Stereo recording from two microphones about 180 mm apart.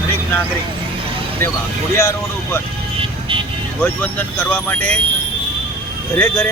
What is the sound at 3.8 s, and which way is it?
Speech, 10° left (ahead or behind).